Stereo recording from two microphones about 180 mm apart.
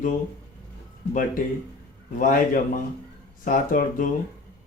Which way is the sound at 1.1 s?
50° left (ahead or behind).